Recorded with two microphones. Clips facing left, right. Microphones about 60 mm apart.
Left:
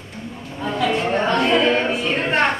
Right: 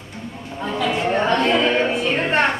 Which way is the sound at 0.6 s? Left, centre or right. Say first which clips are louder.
Left 1 dB; centre.